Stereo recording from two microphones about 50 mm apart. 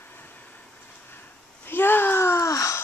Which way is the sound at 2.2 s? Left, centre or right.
Left.